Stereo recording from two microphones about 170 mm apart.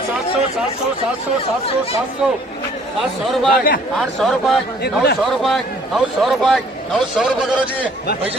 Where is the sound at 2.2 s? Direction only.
5° right (ahead or behind).